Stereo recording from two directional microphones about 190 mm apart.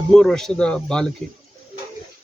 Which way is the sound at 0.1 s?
Centre (ahead or behind).